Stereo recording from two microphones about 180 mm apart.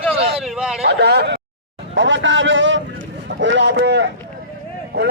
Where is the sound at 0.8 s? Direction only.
65° right (ahead or behind).